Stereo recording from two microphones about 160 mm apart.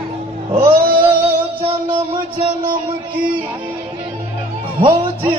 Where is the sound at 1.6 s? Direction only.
35° right (ahead or behind).